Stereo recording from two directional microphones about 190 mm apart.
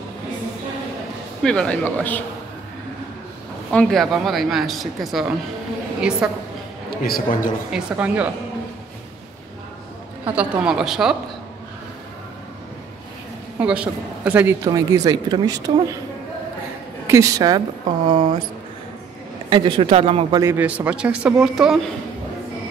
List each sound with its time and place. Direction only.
1.4 s speech: 5° left (ahead or behind)
3.7 s speech: centre (ahead or behind)
6.9 s a man's voice: 50° left (ahead or behind)
7.7 s speech: 5° right (ahead or behind)
10.3 s speech: 5° right (ahead or behind)
13.6 s speech: 5° right (ahead or behind)
17.1 s speech: 15° right (ahead or behind)
19.5 s speech: 25° right (ahead or behind)
20.3 s speech: 10° right (ahead or behind)